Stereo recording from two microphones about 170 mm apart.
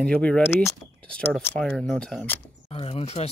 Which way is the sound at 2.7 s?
35° left (ahead or behind).